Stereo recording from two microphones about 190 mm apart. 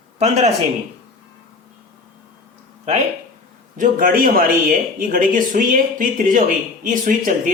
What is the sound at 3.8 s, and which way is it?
Speech, 45° right (ahead or behind).